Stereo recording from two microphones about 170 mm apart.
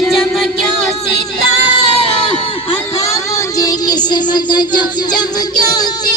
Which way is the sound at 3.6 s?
25° left (ahead or behind).